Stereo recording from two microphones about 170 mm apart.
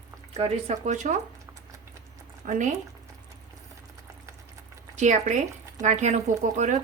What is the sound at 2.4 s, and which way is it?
Speech, 45° right (ahead or behind).